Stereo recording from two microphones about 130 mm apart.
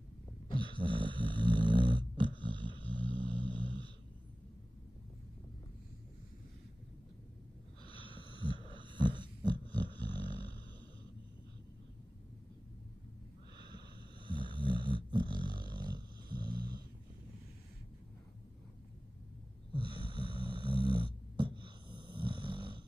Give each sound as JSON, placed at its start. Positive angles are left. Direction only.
{"t": 0.6, "sound": "snoring", "side_deg": -40}
{"t": 2.3, "sound": "dog", "side_deg": -40}
{"t": 2.9, "sound": "snoring", "side_deg": -40}
{"t": 7.8, "sound": "snort", "side_deg": 45}
{"t": 8.3, "sound": "dog", "side_deg": -40}
{"t": 9.8, "sound": "a sound", "side_deg": -35}
{"t": 13.6, "sound": "snoring", "side_deg": -35}
{"t": 19.7, "sound": "snoring", "side_deg": -40}